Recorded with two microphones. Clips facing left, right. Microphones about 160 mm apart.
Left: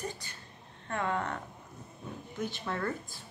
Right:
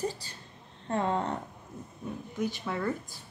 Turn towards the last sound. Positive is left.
turn(degrees=-10)  # may be behind; listen again after turning